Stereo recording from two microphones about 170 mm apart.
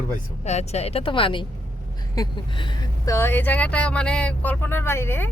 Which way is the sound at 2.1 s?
20° left (ahead or behind).